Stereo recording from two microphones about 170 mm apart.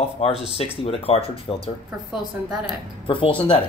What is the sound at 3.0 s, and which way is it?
Speech, 30° left (ahead or behind).